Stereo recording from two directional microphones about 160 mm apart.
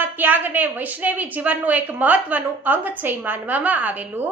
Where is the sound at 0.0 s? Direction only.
10° right (ahead or behind).